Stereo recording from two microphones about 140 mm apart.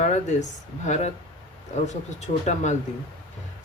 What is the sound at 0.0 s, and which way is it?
Speech, 60° left (ahead or behind).